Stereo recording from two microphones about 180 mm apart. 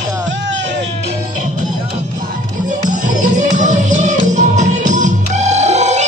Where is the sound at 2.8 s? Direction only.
45° right (ahead or behind).